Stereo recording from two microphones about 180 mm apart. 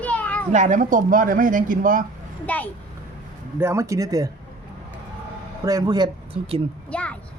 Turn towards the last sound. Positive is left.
turn(degrees=5)  # may be behind; listen again after turning